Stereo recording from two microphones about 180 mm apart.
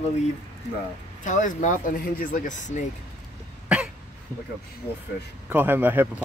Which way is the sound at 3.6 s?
5° right (ahead or behind).